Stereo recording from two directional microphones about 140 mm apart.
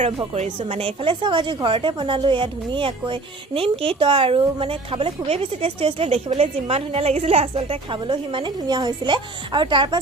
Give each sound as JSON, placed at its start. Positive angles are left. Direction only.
{"t": 0.3, "sound": "speech", "side_deg": -45}